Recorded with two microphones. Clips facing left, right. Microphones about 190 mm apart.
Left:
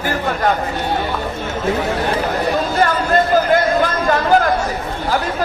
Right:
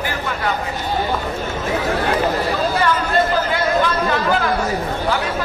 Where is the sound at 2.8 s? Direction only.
45° left (ahead or behind).